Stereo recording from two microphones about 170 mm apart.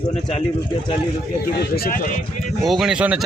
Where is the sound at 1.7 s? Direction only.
55° left (ahead or behind).